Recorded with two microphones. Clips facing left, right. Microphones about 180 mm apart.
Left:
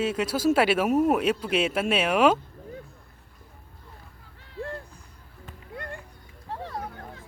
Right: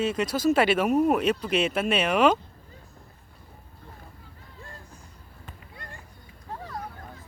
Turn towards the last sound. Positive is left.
turn(degrees=60)  # may be behind; listen again after turning